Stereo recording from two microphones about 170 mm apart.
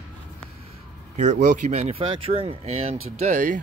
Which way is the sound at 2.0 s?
30° right (ahead or behind).